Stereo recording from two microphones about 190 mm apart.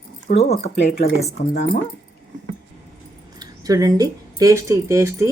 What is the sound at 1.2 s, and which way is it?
Speech, 35° left (ahead or behind).